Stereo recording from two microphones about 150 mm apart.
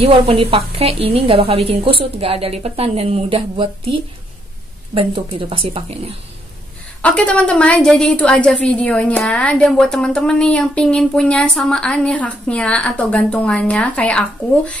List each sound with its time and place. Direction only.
0.0 s a woman's voice: 40° right (ahead or behind)
7.0 s a woman's voice: 10° left (ahead or behind)